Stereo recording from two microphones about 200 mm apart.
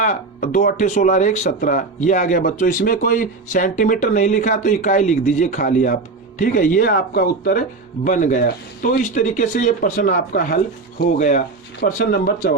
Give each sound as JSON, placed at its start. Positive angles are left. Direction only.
{"t": 0.0, "sound": "speech", "side_deg": 40}